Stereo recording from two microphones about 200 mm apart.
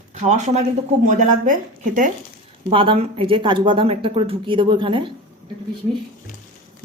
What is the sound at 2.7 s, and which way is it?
A woman's voice, 25° right (ahead or behind).